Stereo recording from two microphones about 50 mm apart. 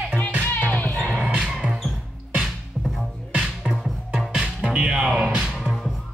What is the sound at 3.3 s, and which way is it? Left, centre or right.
Music, right.